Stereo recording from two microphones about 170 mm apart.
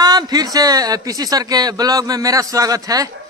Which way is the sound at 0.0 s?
25° right (ahead or behind).